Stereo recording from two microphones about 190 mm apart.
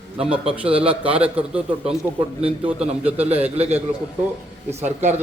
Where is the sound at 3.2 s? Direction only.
35° right (ahead or behind).